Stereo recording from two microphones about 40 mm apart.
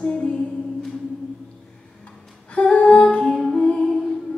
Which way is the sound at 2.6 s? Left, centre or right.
Left.